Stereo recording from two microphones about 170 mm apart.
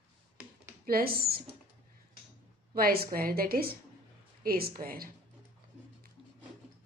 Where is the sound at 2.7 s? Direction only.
60° right (ahead or behind).